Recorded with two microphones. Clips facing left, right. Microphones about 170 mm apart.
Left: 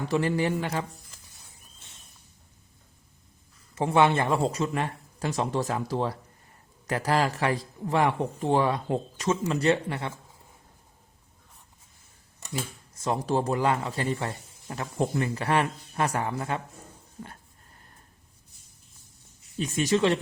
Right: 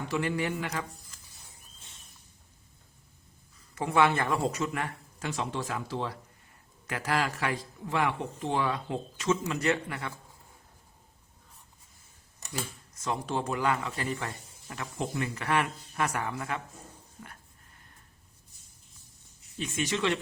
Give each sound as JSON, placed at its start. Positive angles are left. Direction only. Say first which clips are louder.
{"t": 0.1, "sound": "a man's voice", "louder": "left 5 dB", "side_deg": 35}
{"t": 3.8, "sound": "a man's voice", "louder": "left 3 dB", "side_deg": 25}
{"t": 12.9, "sound": "a man's voice", "louder": "left 6 dB", "side_deg": 30}
{"t": 19.5, "sound": "a man's voice", "louder": "left 7 dB", "side_deg": 35}